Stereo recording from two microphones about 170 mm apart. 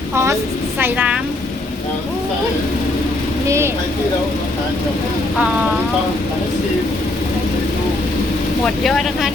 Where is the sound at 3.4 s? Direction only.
15° right (ahead or behind).